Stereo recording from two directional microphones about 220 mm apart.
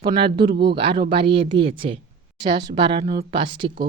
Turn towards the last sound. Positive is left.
turn(degrees=-20)  # may be behind; listen again after turning